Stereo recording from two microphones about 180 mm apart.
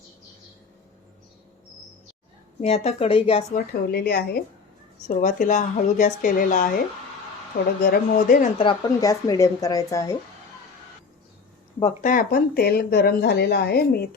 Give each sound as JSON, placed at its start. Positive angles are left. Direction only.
{"t": 2.6, "sound": "speech", "side_deg": 35}
{"t": 3.5, "sound": "speech", "side_deg": 55}
{"t": 5.0, "sound": "speech", "side_deg": 45}
{"t": 8.5, "sound": "a woman's voice", "side_deg": 25}
{"t": 12.0, "sound": "speech", "side_deg": 55}